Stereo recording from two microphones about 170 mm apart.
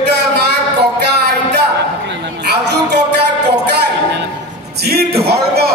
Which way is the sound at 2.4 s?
80° right.